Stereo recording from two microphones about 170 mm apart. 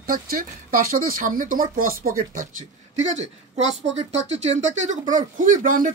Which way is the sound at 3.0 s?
40° right (ahead or behind).